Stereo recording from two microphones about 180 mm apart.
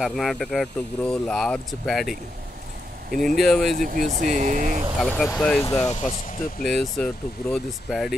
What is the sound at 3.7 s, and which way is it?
Speech, 45° right (ahead or behind).